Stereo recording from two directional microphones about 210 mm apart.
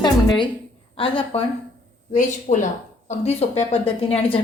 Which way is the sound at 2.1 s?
35° left (ahead or behind).